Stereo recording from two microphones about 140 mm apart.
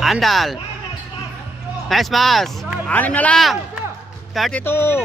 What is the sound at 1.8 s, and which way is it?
Speech, centre (ahead or behind).